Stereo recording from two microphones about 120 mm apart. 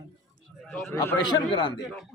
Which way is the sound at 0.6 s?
Centre (ahead or behind).